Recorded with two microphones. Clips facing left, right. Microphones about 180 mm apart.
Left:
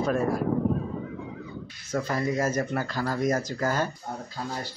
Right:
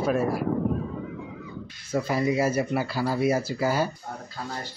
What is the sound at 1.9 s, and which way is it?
Speech, 10° right (ahead or behind).